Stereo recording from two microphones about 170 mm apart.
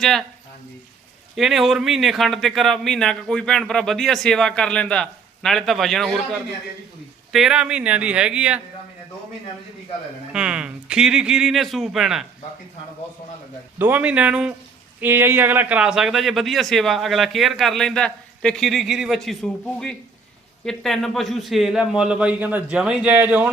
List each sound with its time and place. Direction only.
0.0 s a man's voice: centre (ahead or behind)
1.4 s a man's voice: centre (ahead or behind)
7.3 s a man's voice: 5° right (ahead or behind)
10.3 s a man's voice: 5° right (ahead or behind)
13.7 s a man's voice: 10° right (ahead or behind)